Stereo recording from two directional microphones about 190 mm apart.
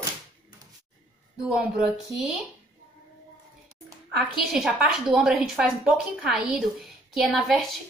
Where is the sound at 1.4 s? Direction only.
5° right (ahead or behind).